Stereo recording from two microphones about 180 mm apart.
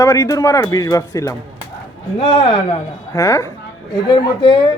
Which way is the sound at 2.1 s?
30° left (ahead or behind).